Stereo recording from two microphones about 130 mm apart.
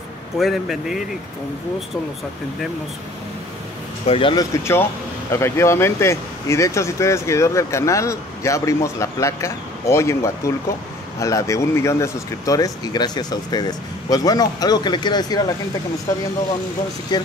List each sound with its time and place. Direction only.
0.4 s a man's voice: centre (ahead or behind)
4.0 s speech: 45° left (ahead or behind)
4.4 s speech: 20° left (ahead or behind)
17.1 s speech: 35° left (ahead or behind)